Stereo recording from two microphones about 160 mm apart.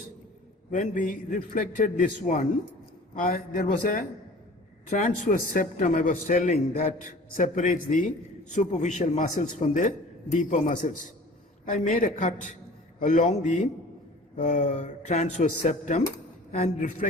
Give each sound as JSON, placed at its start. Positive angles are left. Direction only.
{"t": 0.7, "sound": "a man's voice", "side_deg": 55}